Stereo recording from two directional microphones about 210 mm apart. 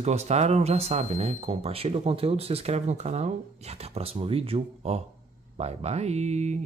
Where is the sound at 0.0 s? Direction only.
30° right (ahead or behind).